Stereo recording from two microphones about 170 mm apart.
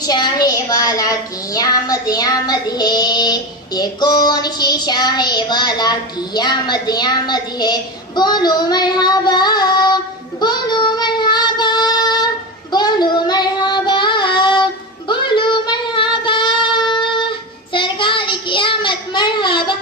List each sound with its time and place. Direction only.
0.0 s speech: 25° left (ahead or behind)
10.4 s child singing: 25° left (ahead or behind)